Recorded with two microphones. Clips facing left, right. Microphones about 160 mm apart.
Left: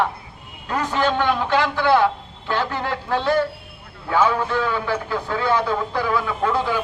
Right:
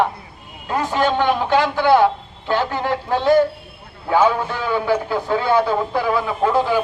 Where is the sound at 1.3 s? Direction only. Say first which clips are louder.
Right 3 dB; 15° right (ahead or behind).